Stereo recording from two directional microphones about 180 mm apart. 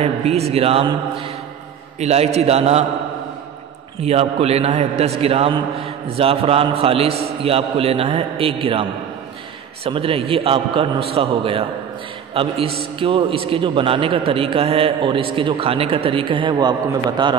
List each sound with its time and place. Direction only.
0.0 s a man's voice: 35° right (ahead or behind)
4.0 s a man's voice: 35° right (ahead or behind)
9.8 s a man's voice: 30° right (ahead or behind)